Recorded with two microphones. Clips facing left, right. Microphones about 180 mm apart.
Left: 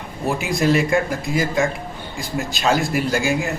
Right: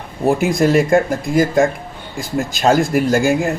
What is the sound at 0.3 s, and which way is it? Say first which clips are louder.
Speech: right 5 dB; 55° right (ahead or behind).